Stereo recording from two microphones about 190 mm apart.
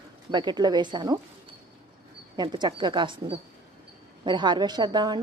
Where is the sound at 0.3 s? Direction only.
25° right (ahead or behind).